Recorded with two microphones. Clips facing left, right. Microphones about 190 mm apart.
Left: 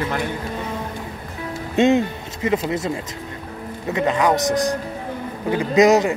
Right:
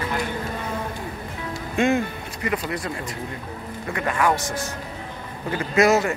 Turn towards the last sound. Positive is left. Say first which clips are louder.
# left 4 dB
turn(degrees=20)  # may be behind; listen again after turning